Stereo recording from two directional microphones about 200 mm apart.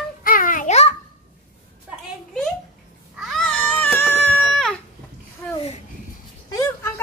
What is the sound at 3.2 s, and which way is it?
Cat, centre (ahead or behind).